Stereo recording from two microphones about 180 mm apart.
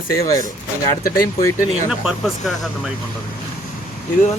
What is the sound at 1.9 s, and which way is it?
Speech, centre (ahead or behind).